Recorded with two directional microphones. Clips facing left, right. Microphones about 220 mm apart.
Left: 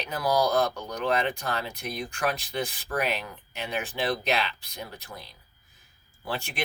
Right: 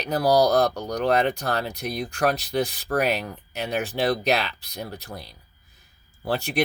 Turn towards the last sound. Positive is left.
turn(degrees=-35)  # may be behind; listen again after turning